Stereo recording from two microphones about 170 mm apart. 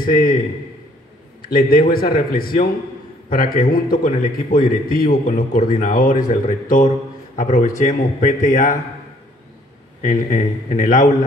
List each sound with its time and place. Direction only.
0.0 s a man's voice: 60° left (ahead or behind)
1.4 s a man's voice: 60° left (ahead or behind)
10.3 s speech: 50° left (ahead or behind)